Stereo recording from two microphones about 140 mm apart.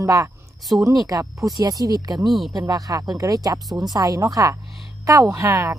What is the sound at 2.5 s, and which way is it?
Speech, 25° right (ahead or behind).